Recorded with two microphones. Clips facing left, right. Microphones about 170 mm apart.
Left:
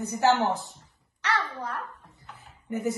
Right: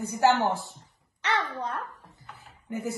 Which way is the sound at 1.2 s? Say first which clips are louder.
Right 1 dB; 20° right (ahead or behind).